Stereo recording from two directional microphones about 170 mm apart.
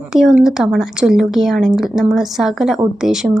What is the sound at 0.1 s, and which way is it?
A woman's voice, 5° right (ahead or behind).